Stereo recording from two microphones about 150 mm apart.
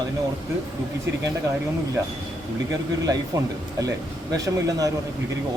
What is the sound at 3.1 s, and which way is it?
Speech, 20° right (ahead or behind).